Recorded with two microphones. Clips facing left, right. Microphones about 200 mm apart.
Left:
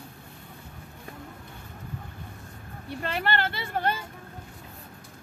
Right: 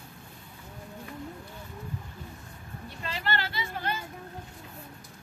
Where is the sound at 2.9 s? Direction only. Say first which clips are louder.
Left 5 dB; 60° left (ahead or behind).